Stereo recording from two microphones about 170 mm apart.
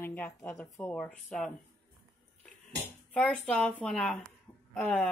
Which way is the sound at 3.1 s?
10° left (ahead or behind).